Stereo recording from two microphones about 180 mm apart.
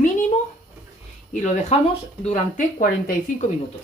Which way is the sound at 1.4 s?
40° left (ahead or behind).